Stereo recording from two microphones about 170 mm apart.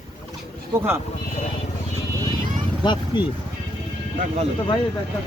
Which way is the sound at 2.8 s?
25° left (ahead or behind).